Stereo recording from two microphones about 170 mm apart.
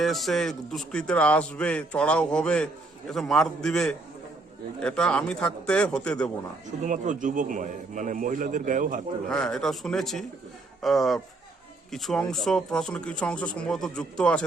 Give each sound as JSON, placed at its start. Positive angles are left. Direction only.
{"t": 0.0, "sound": "a man's voice", "side_deg": 0}
{"t": 6.8, "sound": "a man's voice", "side_deg": -50}
{"t": 9.3, "sound": "a man's voice", "side_deg": 5}